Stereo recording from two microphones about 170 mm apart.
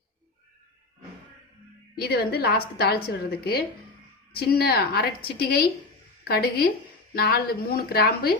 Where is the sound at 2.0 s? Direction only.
70° left (ahead or behind).